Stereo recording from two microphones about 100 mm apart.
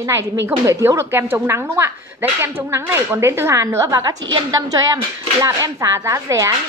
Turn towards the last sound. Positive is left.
turn(degrees=-30)  # may be behind; listen again after turning